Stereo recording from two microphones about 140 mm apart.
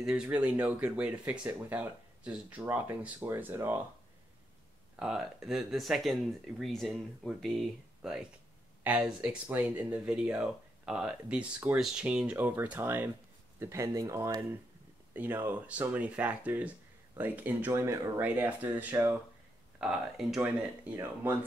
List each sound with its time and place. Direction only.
0.0 s speech: 10° right (ahead or behind)
4.9 s speech: 5° right (ahead or behind)